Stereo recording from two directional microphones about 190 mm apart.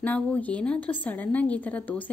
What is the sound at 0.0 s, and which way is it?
A woman's voice, 10° left (ahead or behind).